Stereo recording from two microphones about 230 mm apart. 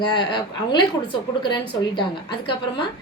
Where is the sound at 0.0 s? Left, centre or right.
Centre.